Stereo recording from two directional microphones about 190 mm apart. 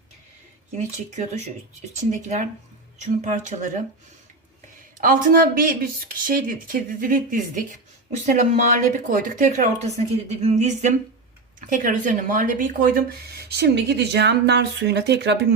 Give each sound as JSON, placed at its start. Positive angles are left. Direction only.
{"t": 2.0, "sound": "speech", "side_deg": -40}
{"t": 4.9, "sound": "speech", "side_deg": -45}